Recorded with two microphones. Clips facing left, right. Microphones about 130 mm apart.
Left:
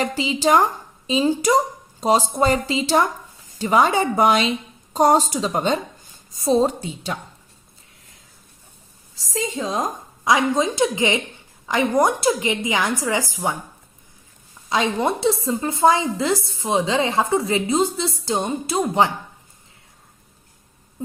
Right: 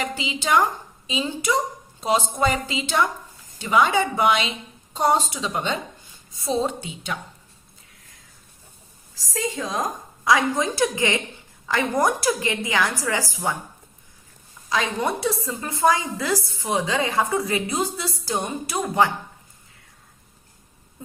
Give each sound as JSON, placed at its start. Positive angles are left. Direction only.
{"t": 0.0, "sound": "a woman's voice", "side_deg": 35}
{"t": 9.3, "sound": "a woman's voice", "side_deg": 20}
{"t": 14.7, "sound": "a woman's voice", "side_deg": 25}